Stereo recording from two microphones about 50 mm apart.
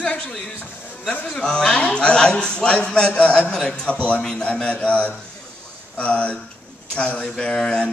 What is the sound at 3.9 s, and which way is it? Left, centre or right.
Speech, left.